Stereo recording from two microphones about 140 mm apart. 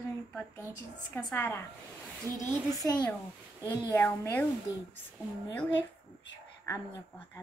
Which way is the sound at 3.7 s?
20° left (ahead or behind).